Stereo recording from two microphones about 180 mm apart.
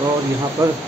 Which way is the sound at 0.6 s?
20° right (ahead or behind).